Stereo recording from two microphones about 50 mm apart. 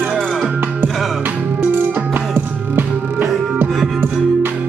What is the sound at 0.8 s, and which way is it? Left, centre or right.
Music, centre.